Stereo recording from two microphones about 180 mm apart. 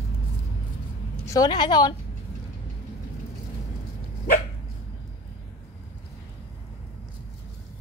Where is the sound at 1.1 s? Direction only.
15° left (ahead or behind).